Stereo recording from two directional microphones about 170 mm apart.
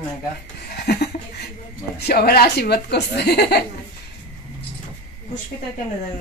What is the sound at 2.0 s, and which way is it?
A woman's voice, 70° left (ahead or behind).